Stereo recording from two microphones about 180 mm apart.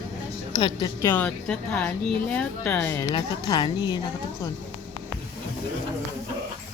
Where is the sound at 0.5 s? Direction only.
25° left (ahead or behind).